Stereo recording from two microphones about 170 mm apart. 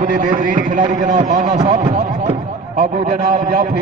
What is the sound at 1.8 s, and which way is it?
A man's voice, 45° right (ahead or behind).